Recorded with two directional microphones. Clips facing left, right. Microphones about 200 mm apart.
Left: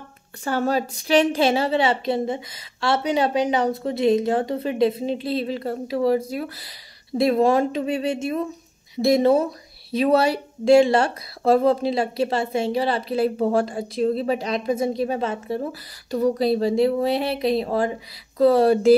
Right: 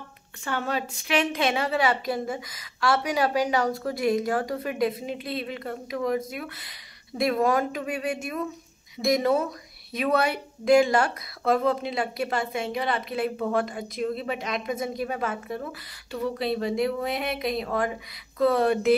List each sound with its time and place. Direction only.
0.4 s a woman's voice: 40° left (ahead or behind)